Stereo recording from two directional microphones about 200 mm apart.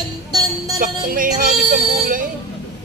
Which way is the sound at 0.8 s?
45° right (ahead or behind).